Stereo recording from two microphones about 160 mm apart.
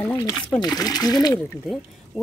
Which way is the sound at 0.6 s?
25° left (ahead or behind).